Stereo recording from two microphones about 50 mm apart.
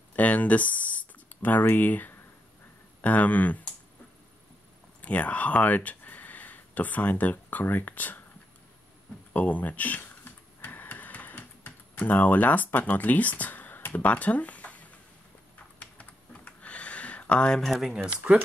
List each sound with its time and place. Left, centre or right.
0.1 s a sound: left
3.0 s speech: left
5.0 s speech: left
9.3 s a sound: left
15.8 s computer keyboard: left
17.6 s speech: centre
17.9 s speech: centre